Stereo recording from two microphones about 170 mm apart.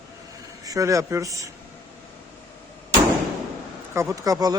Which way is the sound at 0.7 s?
20° right (ahead or behind).